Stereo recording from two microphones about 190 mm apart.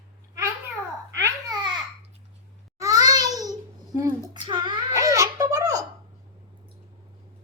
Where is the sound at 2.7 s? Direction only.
20° right (ahead or behind).